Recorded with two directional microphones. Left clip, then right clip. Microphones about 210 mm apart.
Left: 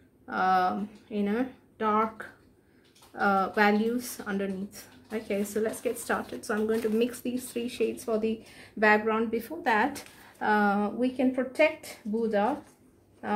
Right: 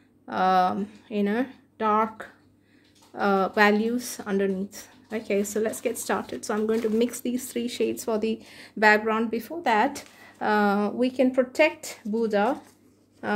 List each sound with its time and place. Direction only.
0.3 s speech: 40° right (ahead or behind)